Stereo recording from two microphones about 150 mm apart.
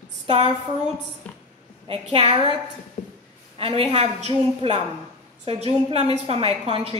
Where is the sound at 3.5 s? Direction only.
40° right (ahead or behind).